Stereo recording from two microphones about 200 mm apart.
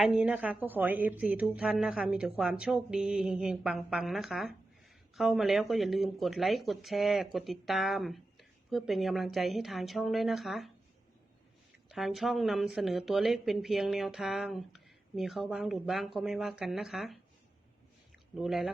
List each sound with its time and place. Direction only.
0.0 s speech: 5° right (ahead or behind)
11.9 s speech: centre (ahead or behind)
18.3 s speech: centre (ahead or behind)